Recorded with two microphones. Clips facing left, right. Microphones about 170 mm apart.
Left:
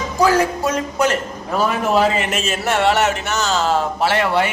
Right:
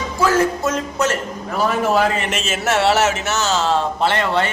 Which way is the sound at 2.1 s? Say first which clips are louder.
Left 1 dB; centre (ahead or behind).